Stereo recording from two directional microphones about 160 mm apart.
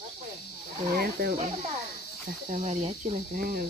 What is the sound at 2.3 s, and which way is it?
Speech, 60° right (ahead or behind).